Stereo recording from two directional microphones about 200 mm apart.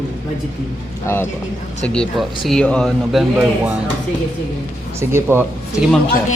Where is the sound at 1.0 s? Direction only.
10° left (ahead or behind).